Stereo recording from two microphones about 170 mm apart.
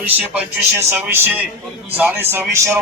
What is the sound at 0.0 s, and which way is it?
A man's voice, 10° right (ahead or behind).